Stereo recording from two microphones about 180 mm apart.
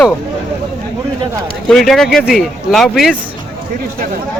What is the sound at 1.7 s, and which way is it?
Speech, centre (ahead or behind).